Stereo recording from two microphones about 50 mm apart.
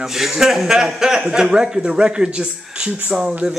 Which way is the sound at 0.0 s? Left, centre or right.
Centre.